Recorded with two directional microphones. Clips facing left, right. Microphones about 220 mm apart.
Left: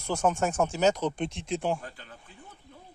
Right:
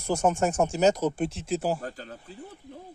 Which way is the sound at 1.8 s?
40° right (ahead or behind).